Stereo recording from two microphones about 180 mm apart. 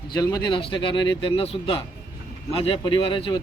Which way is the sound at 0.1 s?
20° left (ahead or behind).